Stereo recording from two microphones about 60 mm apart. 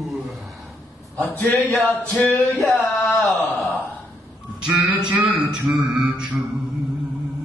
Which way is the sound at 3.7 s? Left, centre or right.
Left.